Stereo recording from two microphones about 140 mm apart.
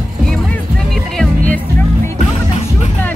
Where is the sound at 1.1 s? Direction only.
10° left (ahead or behind).